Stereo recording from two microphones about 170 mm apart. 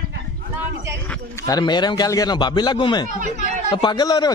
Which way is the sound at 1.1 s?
20° left (ahead or behind).